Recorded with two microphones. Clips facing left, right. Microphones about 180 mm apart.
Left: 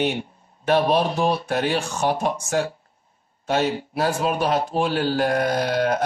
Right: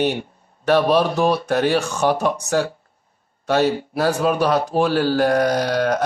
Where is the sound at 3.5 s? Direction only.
40° right (ahead or behind).